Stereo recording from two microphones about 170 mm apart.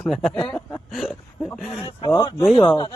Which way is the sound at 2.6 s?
30° left (ahead or behind).